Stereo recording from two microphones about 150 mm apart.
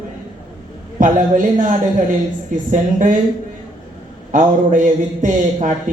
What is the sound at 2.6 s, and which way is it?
Speech, 60° right (ahead or behind).